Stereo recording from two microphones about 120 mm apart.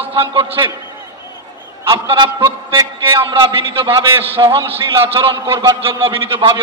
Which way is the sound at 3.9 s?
25° right (ahead or behind).